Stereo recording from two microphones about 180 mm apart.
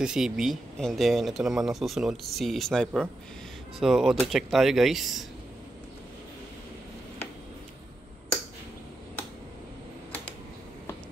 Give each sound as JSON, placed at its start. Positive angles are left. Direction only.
{"t": 0.0, "sound": "speech", "side_deg": -5}